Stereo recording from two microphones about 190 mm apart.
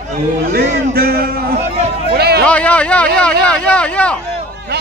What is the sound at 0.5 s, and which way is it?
Speech, 55° right (ahead or behind).